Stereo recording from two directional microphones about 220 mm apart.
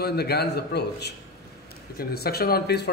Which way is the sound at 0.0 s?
45° left (ahead or behind).